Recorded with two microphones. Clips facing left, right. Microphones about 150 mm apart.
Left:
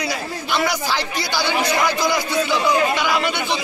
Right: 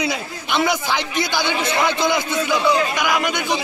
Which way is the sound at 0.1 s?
20° right (ahead or behind).